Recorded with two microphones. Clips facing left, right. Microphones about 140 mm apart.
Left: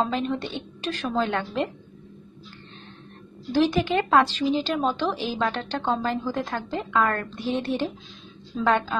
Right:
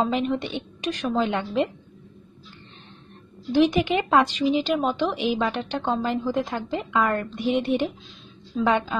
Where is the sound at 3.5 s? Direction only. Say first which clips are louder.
Right 2 dB; 20° right (ahead or behind).